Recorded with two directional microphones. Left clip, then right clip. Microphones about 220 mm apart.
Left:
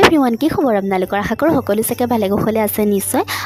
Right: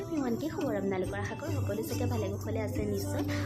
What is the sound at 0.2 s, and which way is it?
Speech, 50° left (ahead or behind).